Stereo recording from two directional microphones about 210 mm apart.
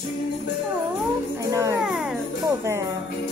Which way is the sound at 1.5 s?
15° right (ahead or behind).